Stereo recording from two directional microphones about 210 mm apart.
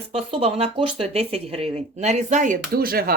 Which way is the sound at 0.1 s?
30° right (ahead or behind).